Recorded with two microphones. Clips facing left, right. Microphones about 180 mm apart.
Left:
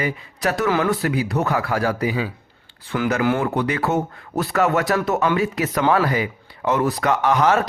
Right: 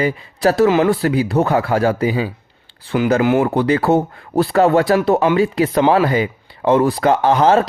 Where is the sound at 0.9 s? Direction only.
30° right (ahead or behind).